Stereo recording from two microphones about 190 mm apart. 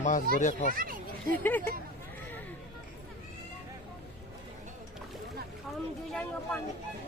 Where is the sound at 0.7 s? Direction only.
45° right (ahead or behind).